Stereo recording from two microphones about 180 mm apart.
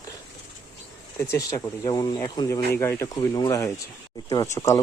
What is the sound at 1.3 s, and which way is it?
A man's voice, 20° left (ahead or behind).